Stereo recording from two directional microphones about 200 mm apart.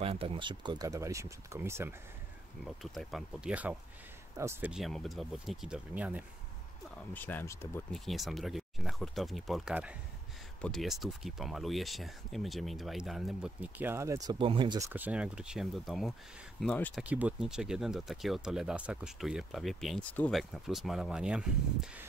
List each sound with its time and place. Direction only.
0.0 s speech: 30° right (ahead or behind); by 2.0 s 10° right (ahead or behind)
2.6 s speech: centre (ahead or behind)
7.2 s speech: 10° left (ahead or behind); by 14.9 s 25° right (ahead or behind)
14.9 s speech: 10° right (ahead or behind)
17.0 s speech: 5° right (ahead or behind)